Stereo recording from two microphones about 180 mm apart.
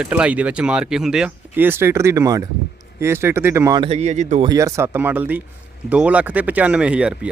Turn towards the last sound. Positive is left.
turn(degrees=-5)  # may be behind; listen again after turning